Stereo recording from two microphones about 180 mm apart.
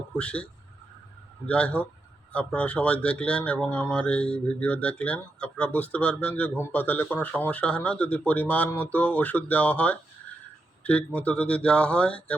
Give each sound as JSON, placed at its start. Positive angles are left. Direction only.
{"t": 0.2, "sound": "speech", "side_deg": 5}
{"t": 1.5, "sound": "speech", "side_deg": 5}